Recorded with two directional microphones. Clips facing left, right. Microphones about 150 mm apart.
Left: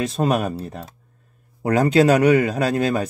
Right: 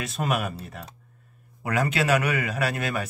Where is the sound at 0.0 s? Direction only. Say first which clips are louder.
Left 7 dB; 30° left (ahead or behind).